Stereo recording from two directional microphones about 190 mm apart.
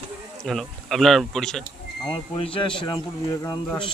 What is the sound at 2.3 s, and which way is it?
Speech, 30° left (ahead or behind).